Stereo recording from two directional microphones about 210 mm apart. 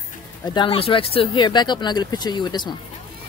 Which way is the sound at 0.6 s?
25° left (ahead or behind).